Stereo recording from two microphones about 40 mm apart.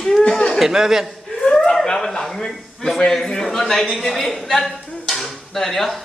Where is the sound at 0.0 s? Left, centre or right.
Centre.